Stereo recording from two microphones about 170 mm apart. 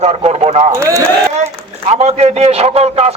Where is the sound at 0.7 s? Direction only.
15° right (ahead or behind).